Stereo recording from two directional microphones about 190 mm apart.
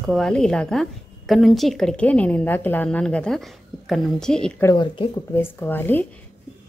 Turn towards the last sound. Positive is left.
turn(degrees=10)  # may be behind; listen again after turning